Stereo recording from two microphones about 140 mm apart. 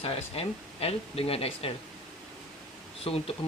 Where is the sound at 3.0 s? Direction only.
40° left (ahead or behind).